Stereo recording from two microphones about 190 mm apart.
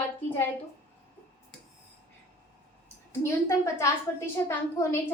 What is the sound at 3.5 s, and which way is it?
A woman's voice, 15° left (ahead or behind).